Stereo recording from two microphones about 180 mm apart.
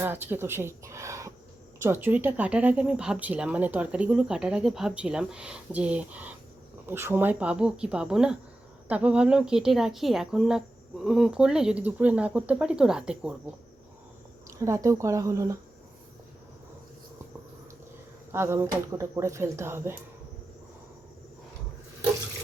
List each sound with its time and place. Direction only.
0.0 s speech: 10° right (ahead or behind)
14.6 s speech: 15° right (ahead or behind)
18.3 s speech: 15° right (ahead or behind)